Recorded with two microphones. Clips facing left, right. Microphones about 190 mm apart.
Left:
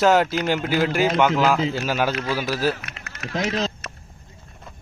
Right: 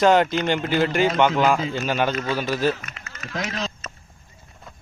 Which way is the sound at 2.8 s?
65° left (ahead or behind).